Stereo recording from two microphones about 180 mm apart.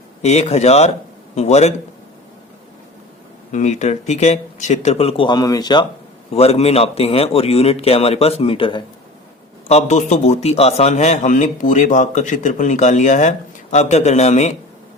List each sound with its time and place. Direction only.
0.2 s a man's voice: 35° left (ahead or behind)
3.5 s a man's voice: 40° left (ahead or behind); by 5.8 s 20° left (ahead or behind)
6.3 s a man's voice: 35° left (ahead or behind)